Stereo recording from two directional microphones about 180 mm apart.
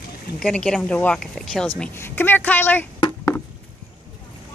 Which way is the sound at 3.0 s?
15° left (ahead or behind).